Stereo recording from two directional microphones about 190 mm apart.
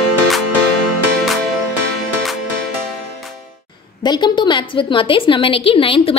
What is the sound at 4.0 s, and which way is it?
A woman's voice, 25° left (ahead or behind).